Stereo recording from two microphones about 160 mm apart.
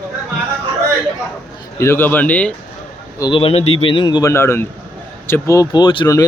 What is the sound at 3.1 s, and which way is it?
Speech, 25° left (ahead or behind).